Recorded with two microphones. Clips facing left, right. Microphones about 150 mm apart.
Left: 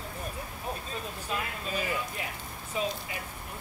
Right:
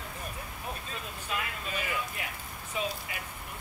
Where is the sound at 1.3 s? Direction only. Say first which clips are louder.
Left 2 dB; 35° left (ahead or behind).